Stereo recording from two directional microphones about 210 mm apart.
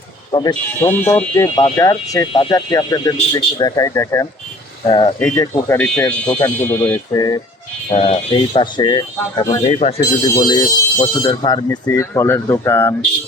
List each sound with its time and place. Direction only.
0.3 s speech: 20° left (ahead or behind)
0.8 s speech: 10° left (ahead or behind)
5.2 s speech: 10° left (ahead or behind)
7.9 s speech: 30° left (ahead or behind)
9.6 s speech: 35° left (ahead or behind)
10.3 s speech: 20° left (ahead or behind)